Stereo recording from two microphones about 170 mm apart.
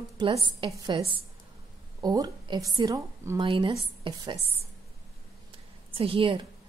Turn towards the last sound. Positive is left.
turn(degrees=-30)  # may be behind; listen again after turning